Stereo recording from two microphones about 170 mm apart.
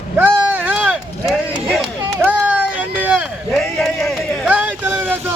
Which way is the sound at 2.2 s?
10° right (ahead or behind).